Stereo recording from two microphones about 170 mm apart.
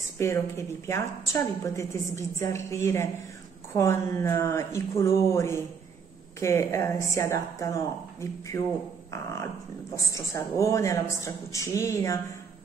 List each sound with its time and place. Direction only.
0.2 s a woman's voice: 15° left (ahead or behind)